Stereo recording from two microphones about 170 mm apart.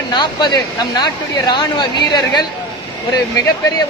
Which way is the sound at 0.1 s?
25° left (ahead or behind).